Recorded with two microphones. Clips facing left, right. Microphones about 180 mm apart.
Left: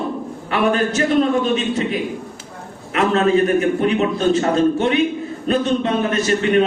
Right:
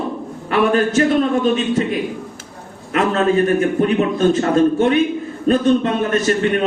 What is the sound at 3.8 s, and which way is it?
A man's voice, 40° right (ahead or behind).